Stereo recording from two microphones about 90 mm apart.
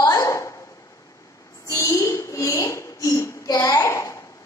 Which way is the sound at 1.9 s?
35° left (ahead or behind).